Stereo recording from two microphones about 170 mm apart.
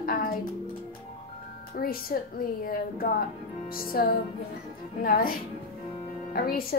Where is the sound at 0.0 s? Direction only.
60° left (ahead or behind).